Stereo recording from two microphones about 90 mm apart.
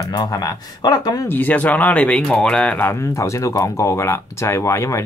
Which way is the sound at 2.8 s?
30° left (ahead or behind).